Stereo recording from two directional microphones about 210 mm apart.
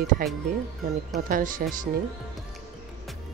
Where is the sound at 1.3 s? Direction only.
40° right (ahead or behind).